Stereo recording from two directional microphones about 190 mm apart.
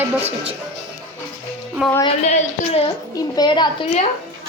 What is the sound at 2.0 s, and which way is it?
Speech, 35° left (ahead or behind).